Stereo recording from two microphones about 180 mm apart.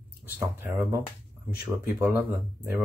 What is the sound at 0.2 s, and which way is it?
Speech, 10° right (ahead or behind).